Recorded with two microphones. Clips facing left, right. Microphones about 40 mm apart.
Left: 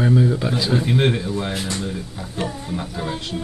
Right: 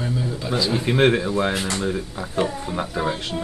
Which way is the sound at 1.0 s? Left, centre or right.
Right.